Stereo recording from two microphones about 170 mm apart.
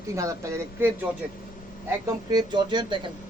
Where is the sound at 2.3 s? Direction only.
25° right (ahead or behind).